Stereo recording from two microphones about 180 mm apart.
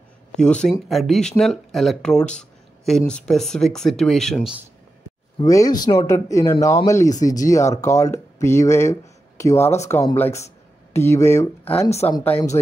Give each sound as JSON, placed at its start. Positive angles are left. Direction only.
{"t": 0.3, "sound": "speech", "side_deg": 5}
{"t": 5.4, "sound": "speech", "side_deg": 20}
{"t": 9.6, "sound": "speech", "side_deg": 35}
{"t": 9.8, "sound": "speech", "side_deg": 15}